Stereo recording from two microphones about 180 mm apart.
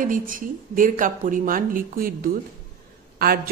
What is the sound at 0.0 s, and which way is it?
A man's voice, 50° right (ahead or behind).